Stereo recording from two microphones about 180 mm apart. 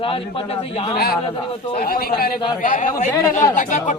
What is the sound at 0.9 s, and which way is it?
Speech, 55° left (ahead or behind).